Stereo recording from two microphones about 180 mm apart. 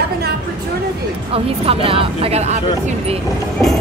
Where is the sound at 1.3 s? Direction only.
30° right (ahead or behind).